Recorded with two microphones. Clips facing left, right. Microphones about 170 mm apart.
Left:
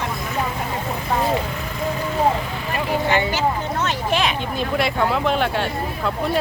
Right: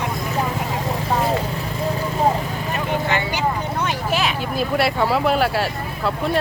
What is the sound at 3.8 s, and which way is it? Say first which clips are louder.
Vehicle: left 1 dB; 5° right (ahead or behind).